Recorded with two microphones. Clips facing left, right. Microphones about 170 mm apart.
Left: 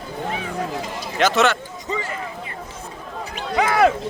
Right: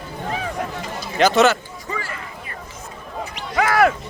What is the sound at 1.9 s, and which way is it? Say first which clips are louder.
Speech: left 3 dB; 20° left (ahead or behind).